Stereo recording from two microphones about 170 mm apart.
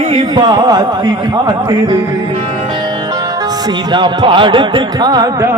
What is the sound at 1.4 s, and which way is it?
Music, 25° right (ahead or behind).